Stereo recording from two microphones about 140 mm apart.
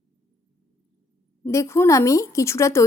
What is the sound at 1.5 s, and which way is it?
A woman's voice, 20° left (ahead or behind).